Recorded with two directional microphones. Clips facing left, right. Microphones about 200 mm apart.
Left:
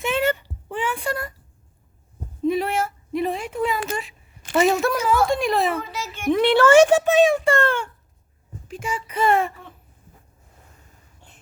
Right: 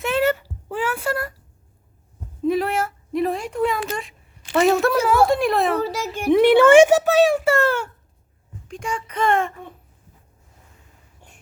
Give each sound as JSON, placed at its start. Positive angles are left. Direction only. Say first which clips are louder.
{"t": 0.0, "sound": "a sound", "louder": "right 2 dB", "side_deg": 0}
{"t": 2.4, "sound": "a sound", "louder": "right 1 dB", "side_deg": 0}
{"t": 3.8, "sound": "a woman's voice", "louder": "even", "side_deg": 0}
{"t": 5.7, "sound": "a child's voice", "louder": "right 6 dB", "side_deg": -40}
{"t": 6.8, "sound": "a child's voice", "louder": "right 1 dB", "side_deg": -5}
{"t": 8.6, "sound": "speech", "louder": "right 1 dB", "side_deg": 5}